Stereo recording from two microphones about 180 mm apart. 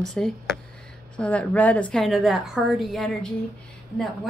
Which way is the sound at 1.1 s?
5° left (ahead or behind).